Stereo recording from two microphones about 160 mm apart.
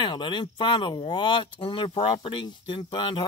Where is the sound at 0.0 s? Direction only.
30° left (ahead or behind).